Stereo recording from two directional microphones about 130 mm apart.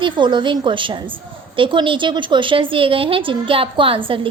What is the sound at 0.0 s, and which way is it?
A woman's voice, 40° right (ahead or behind).